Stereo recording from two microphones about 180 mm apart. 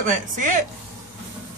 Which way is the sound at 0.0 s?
45° right (ahead or behind).